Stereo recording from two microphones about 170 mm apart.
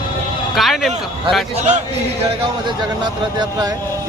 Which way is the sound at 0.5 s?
Centre (ahead or behind).